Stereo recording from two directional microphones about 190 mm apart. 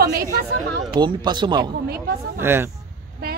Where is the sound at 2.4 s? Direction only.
10° right (ahead or behind).